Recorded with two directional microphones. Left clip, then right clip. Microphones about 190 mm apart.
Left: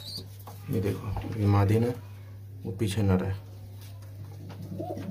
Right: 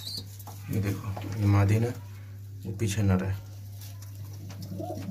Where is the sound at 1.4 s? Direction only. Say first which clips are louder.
Left 2 dB; 15° left (ahead or behind).